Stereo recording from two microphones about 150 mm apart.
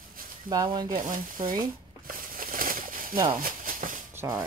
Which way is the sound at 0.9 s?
65° right (ahead or behind).